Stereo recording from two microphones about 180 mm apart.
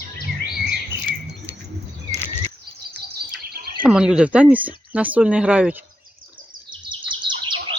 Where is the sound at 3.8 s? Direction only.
5° right (ahead or behind).